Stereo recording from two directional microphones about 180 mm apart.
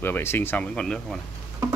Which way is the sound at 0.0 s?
10° left (ahead or behind).